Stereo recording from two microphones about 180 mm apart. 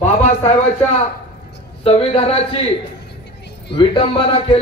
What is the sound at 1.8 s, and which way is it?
Speech, 30° left (ahead or behind).